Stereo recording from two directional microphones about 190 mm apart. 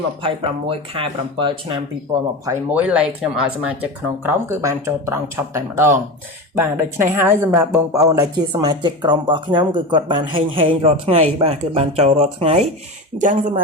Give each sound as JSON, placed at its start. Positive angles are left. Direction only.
{"t": 0.2, "sound": "speech", "side_deg": -30}
{"t": 2.5, "sound": "speech", "side_deg": -10}